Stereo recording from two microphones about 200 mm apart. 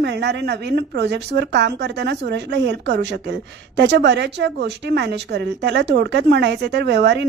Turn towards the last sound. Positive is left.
turn(degrees=-60)  # may be behind; listen again after turning